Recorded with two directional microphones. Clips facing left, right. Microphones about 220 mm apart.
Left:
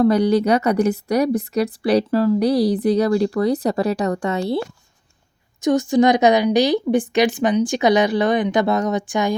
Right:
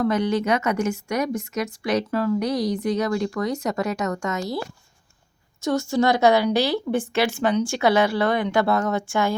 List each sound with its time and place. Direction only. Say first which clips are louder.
0.0 s a woman's voice: left 6 dB; 35° left (ahead or behind)
5.5 s a woman's voice: left 6 dB; 15° left (ahead or behind)